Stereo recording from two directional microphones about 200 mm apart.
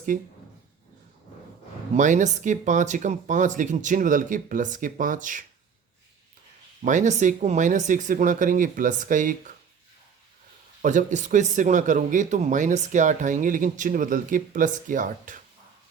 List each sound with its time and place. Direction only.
2.0 s speech: 35° right (ahead or behind)
6.8 s speech: 40° right (ahead or behind)
10.8 s speech: 40° right (ahead or behind)